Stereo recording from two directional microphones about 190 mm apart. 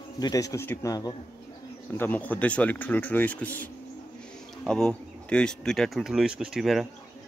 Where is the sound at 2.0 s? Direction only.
10° left (ahead or behind).